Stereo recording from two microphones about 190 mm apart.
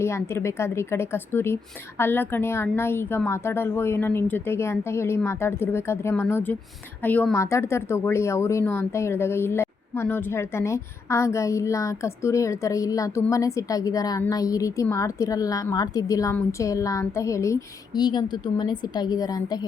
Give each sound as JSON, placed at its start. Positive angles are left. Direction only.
{"t": 0.0, "sound": "a woman's voice", "side_deg": 15}